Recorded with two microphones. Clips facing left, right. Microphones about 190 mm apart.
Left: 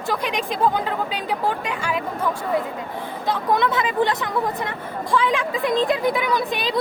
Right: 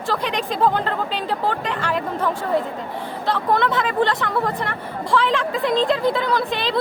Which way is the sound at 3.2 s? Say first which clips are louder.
Right 1 dB; 15° left (ahead or behind).